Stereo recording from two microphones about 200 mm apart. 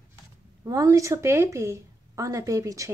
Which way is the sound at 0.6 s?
15° right (ahead or behind).